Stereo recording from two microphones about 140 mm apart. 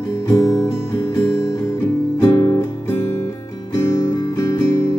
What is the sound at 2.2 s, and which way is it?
Music, 20° left (ahead or behind).